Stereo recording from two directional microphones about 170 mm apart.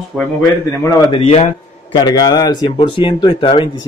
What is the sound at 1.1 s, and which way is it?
Speech, 30° left (ahead or behind).